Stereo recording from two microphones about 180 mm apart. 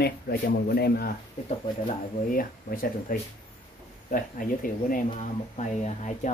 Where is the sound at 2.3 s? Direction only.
50° left (ahead or behind).